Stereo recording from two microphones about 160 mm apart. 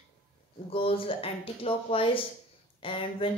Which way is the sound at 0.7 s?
35° left (ahead or behind).